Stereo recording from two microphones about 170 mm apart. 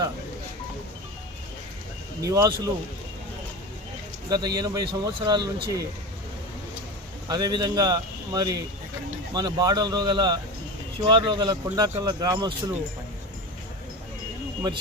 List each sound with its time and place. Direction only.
2.2 s speech: 20° right (ahead or behind)
4.3 s speech: 25° right (ahead or behind)
7.3 s speech: 25° right (ahead or behind)